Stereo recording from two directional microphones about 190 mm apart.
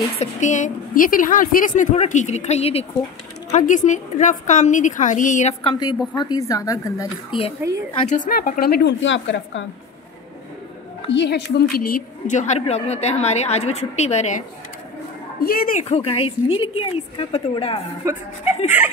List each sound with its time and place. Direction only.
0.2 s a woman's voice: 40° left (ahead or behind); by 7.3 s 20° left (ahead or behind)
8.3 s a woman's voice: 55° left (ahead or behind); by 9.7 s 75° left (ahead or behind)
11.1 s a woman's voice: 65° left (ahead or behind); by 14.4 s 35° left (ahead or behind)
15.4 s a woman's voice: 50° left (ahead or behind)
15.8 s a woman's voice: 30° left (ahead or behind)
18.0 s speech: 15° right (ahead or behind)